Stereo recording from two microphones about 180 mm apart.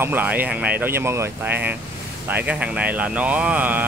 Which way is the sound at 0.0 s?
10° right (ahead or behind).